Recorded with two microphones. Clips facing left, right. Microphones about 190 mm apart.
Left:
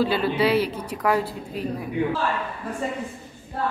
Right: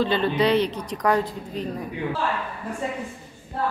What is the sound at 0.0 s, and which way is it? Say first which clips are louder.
A woman's voice: even; 5° left (ahead or behind).